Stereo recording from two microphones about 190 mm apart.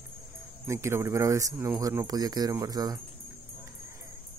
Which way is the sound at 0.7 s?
15° right (ahead or behind).